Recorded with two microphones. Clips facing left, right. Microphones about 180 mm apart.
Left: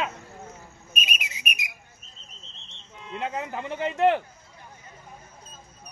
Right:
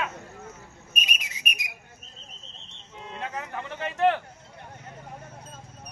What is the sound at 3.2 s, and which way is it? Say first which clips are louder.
Speech: left 4 dB; 20° left (ahead or behind).